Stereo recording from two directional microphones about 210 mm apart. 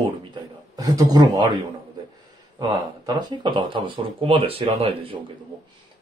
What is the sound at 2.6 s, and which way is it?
Speech, 20° right (ahead or behind).